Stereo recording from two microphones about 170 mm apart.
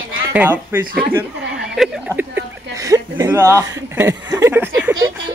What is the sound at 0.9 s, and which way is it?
Speech, 60° right (ahead or behind).